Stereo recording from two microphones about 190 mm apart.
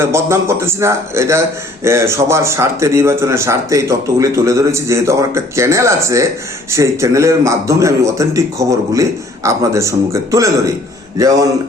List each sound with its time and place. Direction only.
0.0 s a man's voice: 15° right (ahead or behind)